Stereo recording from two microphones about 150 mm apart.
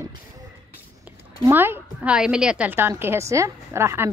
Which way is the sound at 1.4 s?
15° right (ahead or behind).